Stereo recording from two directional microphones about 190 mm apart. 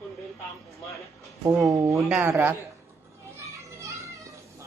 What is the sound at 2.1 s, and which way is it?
Speech, 10° right (ahead or behind).